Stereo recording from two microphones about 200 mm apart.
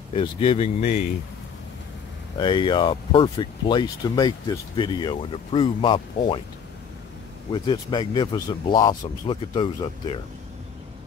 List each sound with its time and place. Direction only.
0.1 s speech: 25° left (ahead or behind)
2.3 s speech: 25° left (ahead or behind)
7.5 s speech: 20° left (ahead or behind)